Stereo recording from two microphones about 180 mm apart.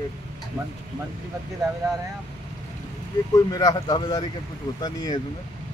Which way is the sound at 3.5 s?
20° left (ahead or behind).